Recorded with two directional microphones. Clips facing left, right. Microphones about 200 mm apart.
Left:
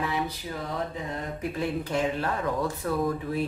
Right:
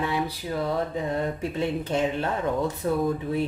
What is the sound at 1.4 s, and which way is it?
A woman's voice, 25° right (ahead or behind).